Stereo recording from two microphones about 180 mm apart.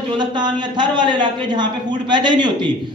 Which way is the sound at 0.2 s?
25° right (ahead or behind).